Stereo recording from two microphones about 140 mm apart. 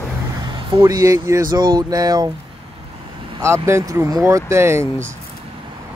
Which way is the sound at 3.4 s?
20° right (ahead or behind).